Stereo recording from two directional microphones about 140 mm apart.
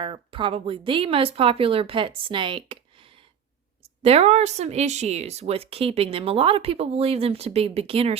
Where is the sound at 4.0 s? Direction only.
45° right (ahead or behind).